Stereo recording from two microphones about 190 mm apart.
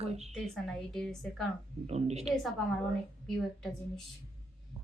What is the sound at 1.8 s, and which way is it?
Speech, 35° right (ahead or behind).